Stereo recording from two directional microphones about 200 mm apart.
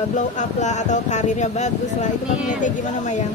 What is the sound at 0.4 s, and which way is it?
Speech, 35° left (ahead or behind).